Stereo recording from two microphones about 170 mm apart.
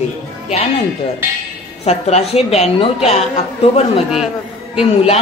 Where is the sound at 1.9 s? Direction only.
40° left (ahead or behind).